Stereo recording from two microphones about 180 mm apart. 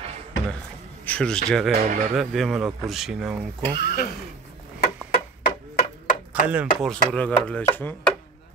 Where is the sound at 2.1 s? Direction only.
Centre (ahead or behind).